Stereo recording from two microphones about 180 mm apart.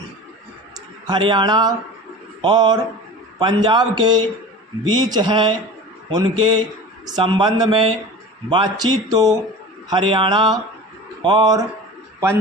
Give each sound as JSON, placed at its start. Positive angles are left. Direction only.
{"t": 1.0, "sound": "a man's voice", "side_deg": -25}